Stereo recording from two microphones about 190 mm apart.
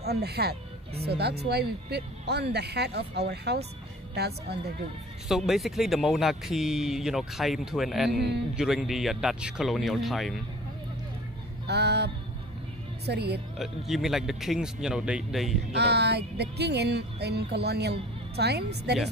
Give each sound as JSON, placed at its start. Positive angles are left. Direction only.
{"t": 0.0, "sound": "speech", "side_deg": -55}
{"t": 5.3, "sound": "a man's voice", "side_deg": 0}
{"t": 11.6, "sound": "speech", "side_deg": -60}
{"t": 13.6, "sound": "a man's voice", "side_deg": 0}
{"t": 15.7, "sound": "speech", "side_deg": -60}